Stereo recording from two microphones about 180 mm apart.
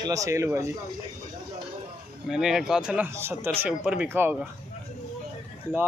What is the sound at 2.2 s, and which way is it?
Speech, centre (ahead or behind).